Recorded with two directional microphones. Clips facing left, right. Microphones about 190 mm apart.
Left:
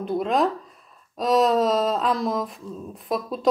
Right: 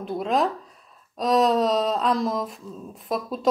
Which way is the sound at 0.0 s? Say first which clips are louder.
Left 2 dB; centre (ahead or behind).